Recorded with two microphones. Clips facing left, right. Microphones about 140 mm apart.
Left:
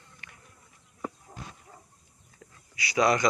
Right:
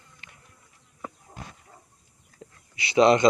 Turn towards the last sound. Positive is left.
turn(degrees=-25)  # may be behind; listen again after turning